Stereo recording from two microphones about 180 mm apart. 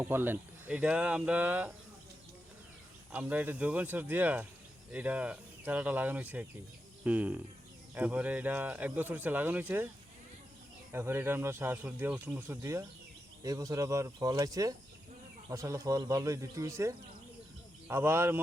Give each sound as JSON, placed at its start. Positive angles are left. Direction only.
{"t": 0.0, "sound": "speech", "side_deg": -10}
{"t": 3.1, "sound": "speech", "side_deg": -10}
{"t": 10.9, "sound": "speech", "side_deg": -15}